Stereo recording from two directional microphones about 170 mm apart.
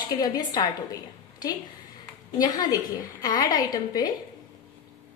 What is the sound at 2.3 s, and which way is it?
A woman's voice, 20° left (ahead or behind).